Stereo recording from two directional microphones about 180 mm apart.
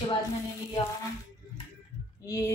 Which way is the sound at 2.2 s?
20° left (ahead or behind).